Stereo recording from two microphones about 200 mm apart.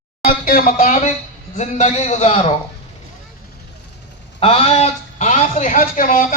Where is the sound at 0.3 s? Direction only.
45° left (ahead or behind).